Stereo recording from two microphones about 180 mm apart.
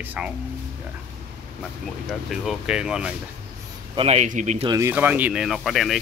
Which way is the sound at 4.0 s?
35° right (ahead or behind).